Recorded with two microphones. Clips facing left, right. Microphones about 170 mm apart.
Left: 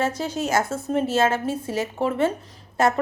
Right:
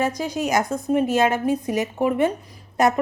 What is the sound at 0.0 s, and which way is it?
A woman's voice, 15° right (ahead or behind).